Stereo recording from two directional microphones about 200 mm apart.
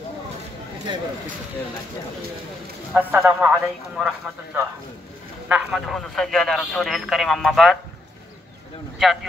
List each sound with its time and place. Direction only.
0.9 s speech: 25° right (ahead or behind)
2.9 s a man's voice: 5° right (ahead or behind)
5.5 s a man's voice: centre (ahead or behind)
8.9 s a man's voice: centre (ahead or behind)